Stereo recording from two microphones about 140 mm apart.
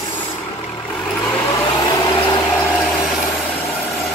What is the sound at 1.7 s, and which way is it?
Vehicle, 30° left (ahead or behind).